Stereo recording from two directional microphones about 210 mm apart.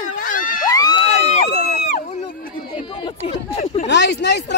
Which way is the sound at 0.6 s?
20° left (ahead or behind).